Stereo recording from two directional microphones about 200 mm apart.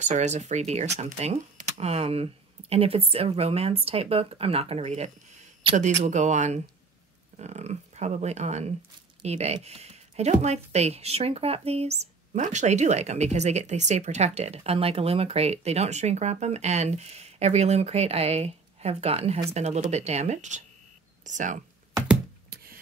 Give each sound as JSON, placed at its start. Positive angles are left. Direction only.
{"t": 0.0, "sound": "speech", "side_deg": -35}